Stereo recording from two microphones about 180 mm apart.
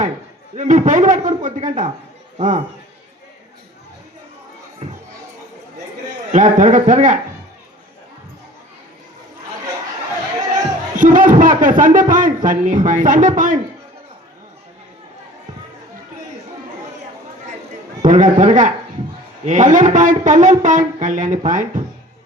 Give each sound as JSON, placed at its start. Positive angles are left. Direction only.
{"t": 0.5, "sound": "speech", "side_deg": -40}
{"t": 6.3, "sound": "speech", "side_deg": -45}
{"t": 10.5, "sound": "speech", "side_deg": -45}
{"t": 18.0, "sound": "speech", "side_deg": -45}